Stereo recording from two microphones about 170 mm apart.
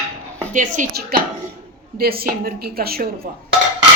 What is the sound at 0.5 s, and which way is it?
A woman's voice, 50° right (ahead or behind).